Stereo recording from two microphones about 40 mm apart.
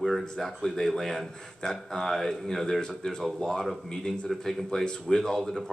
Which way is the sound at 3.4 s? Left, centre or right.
Centre.